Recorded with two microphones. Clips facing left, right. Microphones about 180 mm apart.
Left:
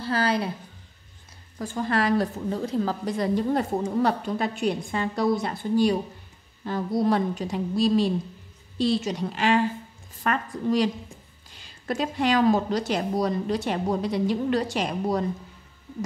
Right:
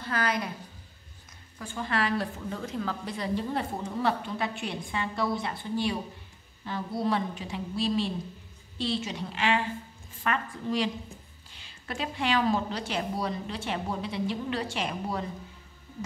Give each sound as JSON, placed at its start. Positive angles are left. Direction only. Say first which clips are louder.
{"t": 0.0, "sound": "a woman's voice", "louder": "left 5 dB", "side_deg": 30}
{"t": 1.6, "sound": "a woman's voice", "louder": "left 5 dB", "side_deg": 40}
{"t": 11.9, "sound": "a woman's voice", "louder": "left 5 dB", "side_deg": 40}